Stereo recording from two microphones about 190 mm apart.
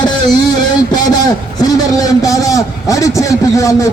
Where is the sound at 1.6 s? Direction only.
20° left (ahead or behind).